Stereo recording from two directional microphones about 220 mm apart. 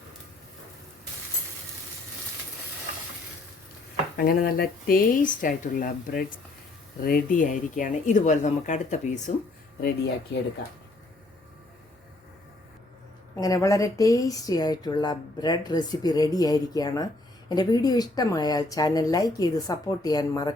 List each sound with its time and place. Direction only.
4.2 s speech: 45° left (ahead or behind)
13.3 s speech: 15° left (ahead or behind)